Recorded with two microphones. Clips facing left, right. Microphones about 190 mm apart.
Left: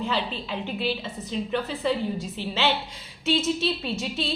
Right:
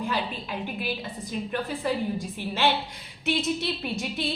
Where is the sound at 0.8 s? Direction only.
10° right (ahead or behind).